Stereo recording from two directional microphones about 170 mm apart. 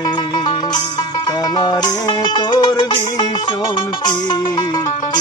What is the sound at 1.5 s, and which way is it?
Music, 25° left (ahead or behind).